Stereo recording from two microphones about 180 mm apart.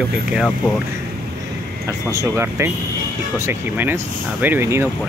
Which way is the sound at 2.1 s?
15° right (ahead or behind).